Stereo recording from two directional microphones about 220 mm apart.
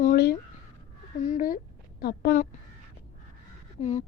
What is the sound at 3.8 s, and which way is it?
Speech, 30° left (ahead or behind).